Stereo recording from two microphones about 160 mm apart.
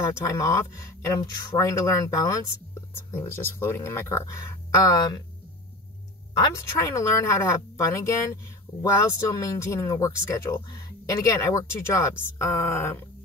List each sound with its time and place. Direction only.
0.2 s speech: 20° left (ahead or behind)
6.3 s speech: 25° left (ahead or behind)
9.4 s speech: 20° left (ahead or behind)